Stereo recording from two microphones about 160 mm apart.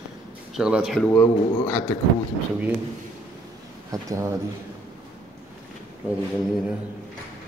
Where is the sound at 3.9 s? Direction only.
20° right (ahead or behind).